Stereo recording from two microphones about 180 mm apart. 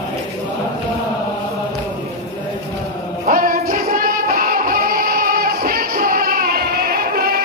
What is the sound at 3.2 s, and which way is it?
Music, 50° right (ahead or behind).